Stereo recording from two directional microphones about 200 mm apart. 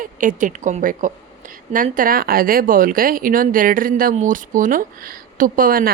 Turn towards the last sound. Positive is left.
turn(degrees=-45)  # may be behind; listen again after turning